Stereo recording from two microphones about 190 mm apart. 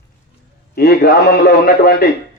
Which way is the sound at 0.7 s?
55° left (ahead or behind).